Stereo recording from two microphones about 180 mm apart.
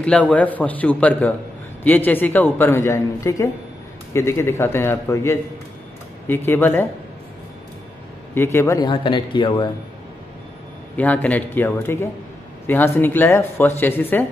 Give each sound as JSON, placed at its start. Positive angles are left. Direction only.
{"t": 0.0, "sound": "a man's voice", "side_deg": 5}
{"t": 8.4, "sound": "speech", "side_deg": 15}
{"t": 11.0, "sound": "a man's voice", "side_deg": 10}